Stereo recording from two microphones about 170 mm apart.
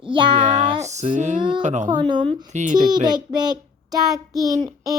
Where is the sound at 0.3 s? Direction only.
45° right (ahead or behind).